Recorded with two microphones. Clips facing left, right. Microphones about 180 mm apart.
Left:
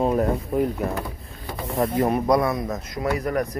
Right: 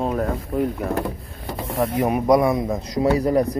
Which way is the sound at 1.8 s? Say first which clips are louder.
Even; 10° right (ahead or behind).